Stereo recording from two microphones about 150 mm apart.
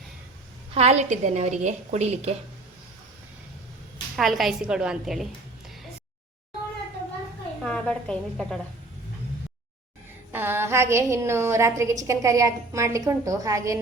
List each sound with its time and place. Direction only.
0.7 s a woman's voice: 45° right (ahead or behind)
4.1 s a woman's voice: centre (ahead or behind)
7.6 s a woman's voice: 5° left (ahead or behind)
10.3 s a woman's voice: 15° right (ahead or behind)